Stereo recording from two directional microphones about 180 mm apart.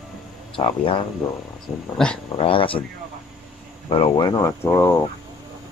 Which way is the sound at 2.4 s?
30° left (ahead or behind).